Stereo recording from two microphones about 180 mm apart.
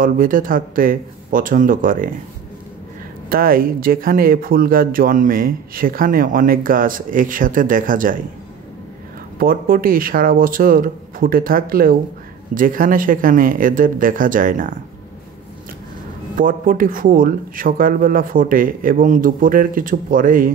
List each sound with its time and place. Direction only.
0.0 s speech: 50° right (ahead or behind)
3.3 s speech: 55° right (ahead or behind)
9.4 s speech: 55° right (ahead or behind)
16.3 s speech: 50° right (ahead or behind)